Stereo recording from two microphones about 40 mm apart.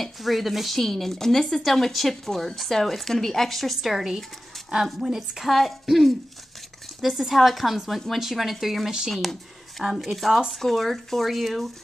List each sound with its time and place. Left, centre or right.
0.0 s a woman's voice: centre